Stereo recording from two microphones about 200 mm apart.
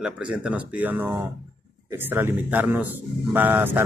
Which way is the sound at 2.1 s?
10° right (ahead or behind).